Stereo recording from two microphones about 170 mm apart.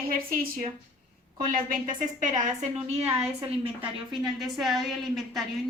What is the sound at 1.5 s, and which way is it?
A woman's voice, 50° right (ahead or behind).